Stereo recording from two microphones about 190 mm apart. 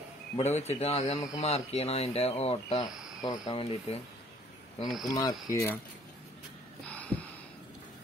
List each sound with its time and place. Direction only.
0.4 s speech: 35° left (ahead or behind)
3.2 s speech: 20° left (ahead or behind)
4.8 s speech: centre (ahead or behind)
5.1 s speech: 15° left (ahead or behind)
6.9 s gasp: 5° left (ahead or behind)